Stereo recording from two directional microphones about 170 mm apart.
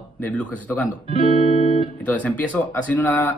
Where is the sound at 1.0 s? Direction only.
35° right (ahead or behind).